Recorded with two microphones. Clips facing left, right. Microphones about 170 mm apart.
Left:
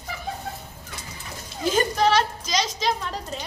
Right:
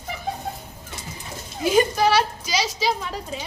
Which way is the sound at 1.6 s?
10° right (ahead or behind).